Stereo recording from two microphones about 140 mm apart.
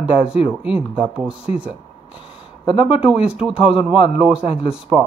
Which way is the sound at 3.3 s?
5° right (ahead or behind).